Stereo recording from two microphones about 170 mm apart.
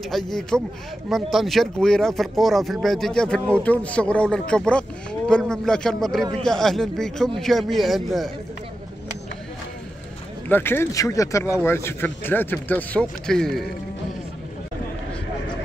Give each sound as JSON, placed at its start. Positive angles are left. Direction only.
{"t": 0.3, "sound": "speech", "side_deg": 5}
{"t": 10.5, "sound": "speech", "side_deg": 15}